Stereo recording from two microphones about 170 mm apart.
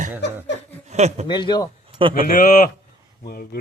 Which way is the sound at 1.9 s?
30° right (ahead or behind).